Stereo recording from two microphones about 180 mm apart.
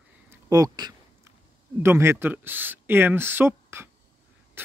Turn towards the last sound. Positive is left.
turn(degrees=-15)  # may be behind; listen again after turning